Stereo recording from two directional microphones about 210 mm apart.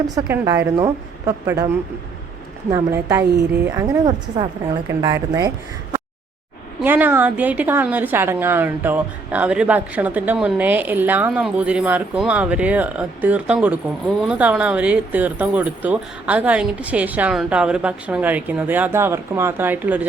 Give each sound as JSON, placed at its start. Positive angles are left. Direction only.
{"t": 0.3, "sound": "a woman's voice", "side_deg": -15}
{"t": 6.8, "sound": "a woman's voice", "side_deg": -10}